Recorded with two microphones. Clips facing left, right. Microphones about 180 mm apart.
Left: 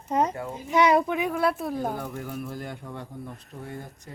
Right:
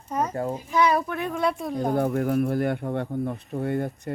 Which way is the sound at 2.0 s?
65° right (ahead or behind).